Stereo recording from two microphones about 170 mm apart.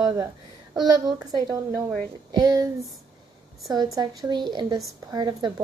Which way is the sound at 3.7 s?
20° right (ahead or behind).